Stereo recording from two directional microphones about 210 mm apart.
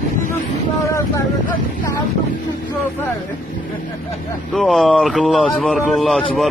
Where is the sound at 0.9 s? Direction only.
15° left (ahead or behind).